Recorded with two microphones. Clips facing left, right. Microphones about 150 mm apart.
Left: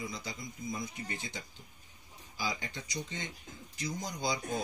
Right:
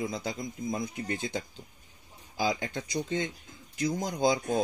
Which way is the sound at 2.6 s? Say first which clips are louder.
Right 8 dB; 50° right (ahead or behind).